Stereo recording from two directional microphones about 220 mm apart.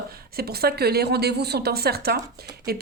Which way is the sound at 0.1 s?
45° right (ahead or behind).